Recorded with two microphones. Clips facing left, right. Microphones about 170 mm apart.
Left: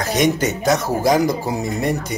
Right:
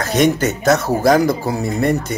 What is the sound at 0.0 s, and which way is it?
Speech, 15° left (ahead or behind).